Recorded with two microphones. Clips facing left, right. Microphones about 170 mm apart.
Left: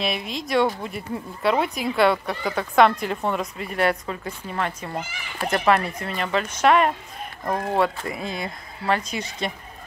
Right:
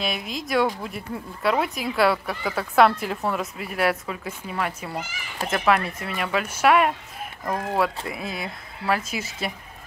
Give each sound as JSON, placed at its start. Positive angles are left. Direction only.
{"t": 0.0, "sound": "speech", "side_deg": 0}